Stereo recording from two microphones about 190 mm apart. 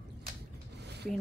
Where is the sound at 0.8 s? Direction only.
60° right (ahead or behind).